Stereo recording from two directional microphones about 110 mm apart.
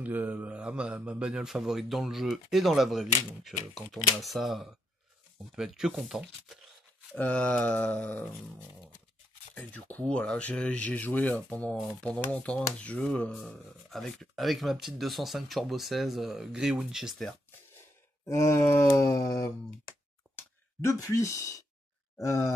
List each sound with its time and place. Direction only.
0.0 s speech: 15° right (ahead or behind)
7.2 s speech: 10° left (ahead or behind)
9.6 s speech: 10° left (ahead or behind)
18.2 s groan: 25° left (ahead or behind)
20.3 s a sound: 25° left (ahead or behind)
22.2 s groan: 25° left (ahead or behind)